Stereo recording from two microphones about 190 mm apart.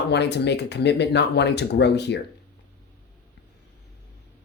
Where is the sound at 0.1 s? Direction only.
65° left (ahead or behind).